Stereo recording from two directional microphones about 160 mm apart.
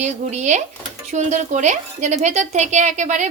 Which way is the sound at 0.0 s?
50° right (ahead or behind).